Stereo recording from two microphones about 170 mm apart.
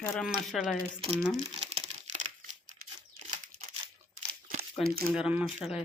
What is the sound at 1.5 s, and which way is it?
Computer keyboard, 35° right (ahead or behind).